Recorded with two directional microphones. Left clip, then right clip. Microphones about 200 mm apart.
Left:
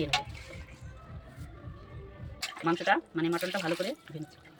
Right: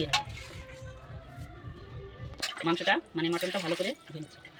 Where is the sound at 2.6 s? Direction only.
15° left (ahead or behind).